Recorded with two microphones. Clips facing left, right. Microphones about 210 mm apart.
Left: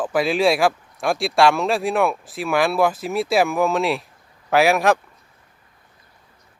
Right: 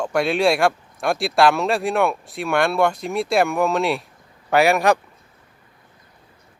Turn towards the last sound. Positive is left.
turn(degrees=0)  # may be behind; listen again after turning